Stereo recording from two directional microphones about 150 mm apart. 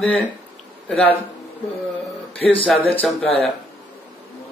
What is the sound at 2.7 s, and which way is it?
Speech, 5° left (ahead or behind).